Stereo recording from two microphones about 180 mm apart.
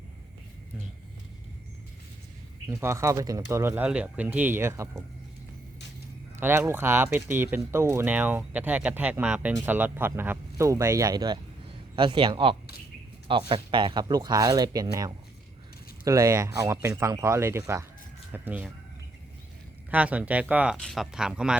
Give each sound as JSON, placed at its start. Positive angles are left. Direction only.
{"t": 2.6, "sound": "speech", "side_deg": -15}
{"t": 6.3, "sound": "speech", "side_deg": -10}
{"t": 19.9, "sound": "speech", "side_deg": -10}